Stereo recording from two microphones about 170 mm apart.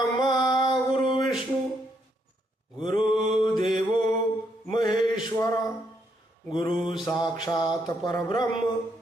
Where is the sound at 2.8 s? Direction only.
30° left (ahead or behind).